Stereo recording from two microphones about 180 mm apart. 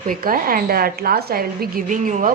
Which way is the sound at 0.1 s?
50° right (ahead or behind).